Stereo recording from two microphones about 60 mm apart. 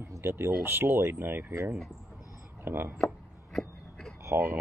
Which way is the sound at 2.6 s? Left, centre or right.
Right.